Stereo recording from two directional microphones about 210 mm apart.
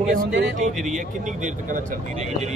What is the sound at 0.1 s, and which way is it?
Speech, 45° right (ahead or behind).